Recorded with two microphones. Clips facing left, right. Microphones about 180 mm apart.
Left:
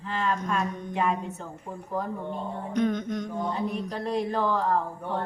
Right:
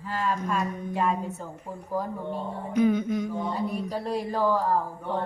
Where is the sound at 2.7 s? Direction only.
5° right (ahead or behind).